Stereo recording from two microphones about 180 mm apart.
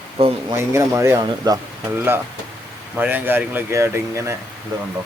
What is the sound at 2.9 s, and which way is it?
Speech, 10° right (ahead or behind).